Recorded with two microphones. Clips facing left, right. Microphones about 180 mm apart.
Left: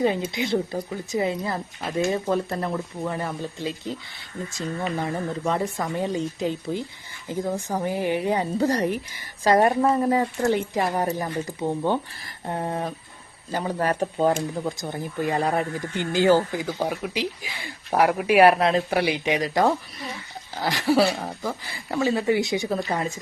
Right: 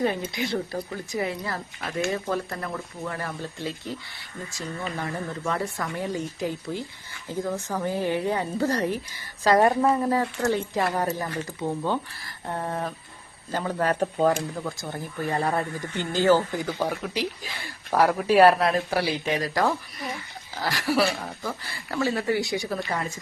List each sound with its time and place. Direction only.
0.0 s speech: 20° left (ahead or behind)
4.9 s speech: 20° left (ahead or behind)